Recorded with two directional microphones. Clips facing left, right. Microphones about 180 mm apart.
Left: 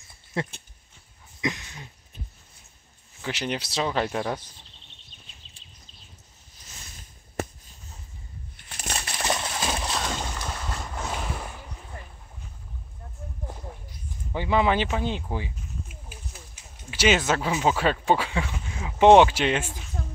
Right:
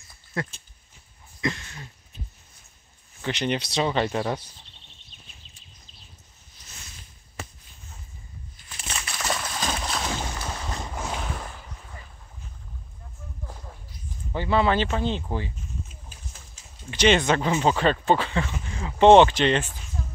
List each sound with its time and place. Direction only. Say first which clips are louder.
0.1 s a sound: left 1 dB; 25° left (ahead or behind)
1.4 s speech: right 1 dB; 15° left (ahead or behind)
3.2 s speech: right 3 dB; 5° left (ahead or behind)
8.7 s a sound: left 2 dB; 40° left (ahead or behind)
9.1 s a sound: left 1 dB; 25° left (ahead or behind)
9.9 s boat: even; 5° right (ahead or behind)
11.1 s boat: even; 5° left (ahead or behind)
14.3 s speech: right 1 dB; 15° left (ahead or behind)
16.9 s speech: right 2 dB; 5° left (ahead or behind)